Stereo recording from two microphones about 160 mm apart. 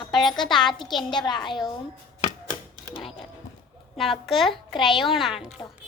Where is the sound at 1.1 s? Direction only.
30° left (ahead or behind).